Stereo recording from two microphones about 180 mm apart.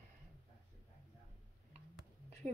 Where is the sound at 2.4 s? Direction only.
45° right (ahead or behind).